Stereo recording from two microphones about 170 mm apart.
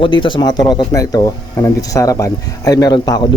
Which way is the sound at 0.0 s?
30° left (ahead or behind).